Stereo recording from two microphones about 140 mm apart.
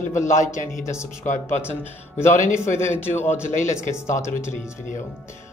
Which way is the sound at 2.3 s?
65° left (ahead or behind).